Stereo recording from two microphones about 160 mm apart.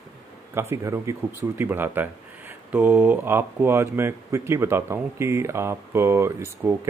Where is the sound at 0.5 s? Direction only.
15° right (ahead or behind).